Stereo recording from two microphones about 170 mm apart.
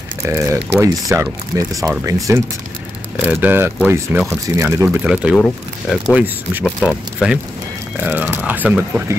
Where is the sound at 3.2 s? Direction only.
10° right (ahead or behind).